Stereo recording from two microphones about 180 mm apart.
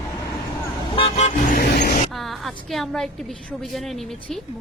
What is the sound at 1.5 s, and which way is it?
Vehicle, 60° left (ahead or behind).